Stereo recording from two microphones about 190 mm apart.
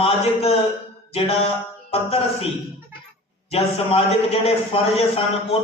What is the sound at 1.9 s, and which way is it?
Speech, 30° left (ahead or behind).